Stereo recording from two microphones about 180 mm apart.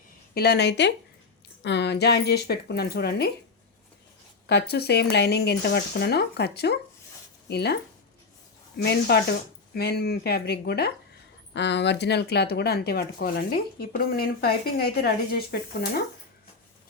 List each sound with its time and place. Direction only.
0.3 s speech: 65° left (ahead or behind)
4.4 s speech: 65° left (ahead or behind)
8.8 s speech: 65° left (ahead or behind)
11.5 s speech: 75° left (ahead or behind)